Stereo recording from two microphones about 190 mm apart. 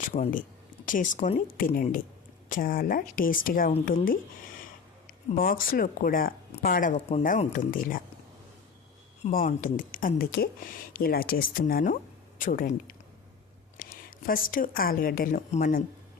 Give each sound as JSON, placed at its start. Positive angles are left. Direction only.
{"t": 0.0, "sound": "speech", "side_deg": 40}
{"t": 5.4, "sound": "speech", "side_deg": 50}
{"t": 9.2, "sound": "speech", "side_deg": 45}
{"t": 13.7, "sound": "speech", "side_deg": 45}